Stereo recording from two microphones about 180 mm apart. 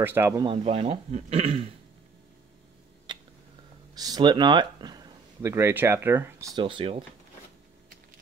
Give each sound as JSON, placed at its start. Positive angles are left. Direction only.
{"t": 0.0, "sound": "speech", "side_deg": -10}
{"t": 0.4, "sound": "speech", "side_deg": -30}
{"t": 3.9, "sound": "speech", "side_deg": -20}
{"t": 6.5, "sound": "speech", "side_deg": -30}